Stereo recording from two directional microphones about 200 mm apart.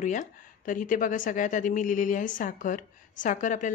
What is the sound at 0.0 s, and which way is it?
Speech, 40° left (ahead or behind).